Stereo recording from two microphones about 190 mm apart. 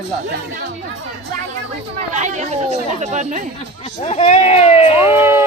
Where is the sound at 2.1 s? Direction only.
40° right (ahead or behind).